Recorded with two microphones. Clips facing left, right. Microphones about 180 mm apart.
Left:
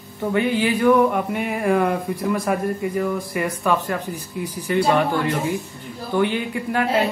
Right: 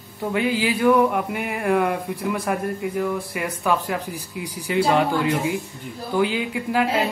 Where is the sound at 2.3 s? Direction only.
Centre (ahead or behind).